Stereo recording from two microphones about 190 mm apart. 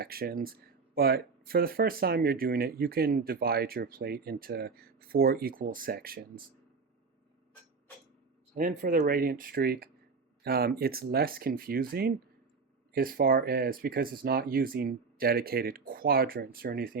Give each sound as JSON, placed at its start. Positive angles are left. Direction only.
{"t": 0.0, "sound": "speech", "side_deg": -55}
{"t": 8.5, "sound": "speech", "side_deg": -45}